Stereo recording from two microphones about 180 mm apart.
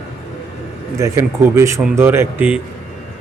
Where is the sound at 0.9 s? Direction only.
15° right (ahead or behind).